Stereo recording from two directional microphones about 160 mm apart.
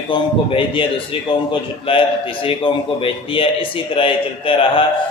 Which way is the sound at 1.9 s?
35° left (ahead or behind).